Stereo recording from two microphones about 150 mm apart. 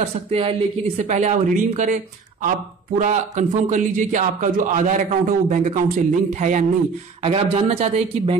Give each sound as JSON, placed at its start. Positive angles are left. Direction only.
{"t": 0.3, "sound": "a man's voice", "side_deg": -40}
{"t": 3.0, "sound": "a man's voice", "side_deg": -55}
{"t": 7.2, "sound": "speech", "side_deg": -40}